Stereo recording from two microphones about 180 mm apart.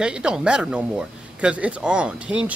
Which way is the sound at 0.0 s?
5° right (ahead or behind).